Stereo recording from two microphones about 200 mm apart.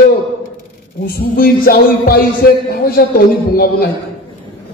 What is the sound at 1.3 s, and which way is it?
A man's voice, 45° left (ahead or behind).